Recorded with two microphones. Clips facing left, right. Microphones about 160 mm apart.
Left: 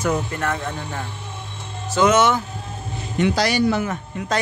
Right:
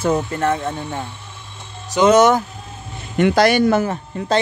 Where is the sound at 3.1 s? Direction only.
55° right (ahead or behind).